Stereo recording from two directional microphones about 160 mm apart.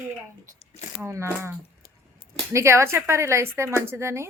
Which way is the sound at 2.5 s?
15° right (ahead or behind).